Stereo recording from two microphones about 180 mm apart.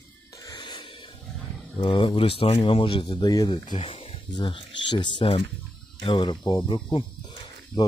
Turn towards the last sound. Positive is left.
turn(degrees=25)  # may be behind; listen again after turning